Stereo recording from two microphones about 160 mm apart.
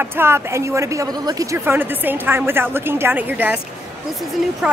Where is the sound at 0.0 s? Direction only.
15° right (ahead or behind).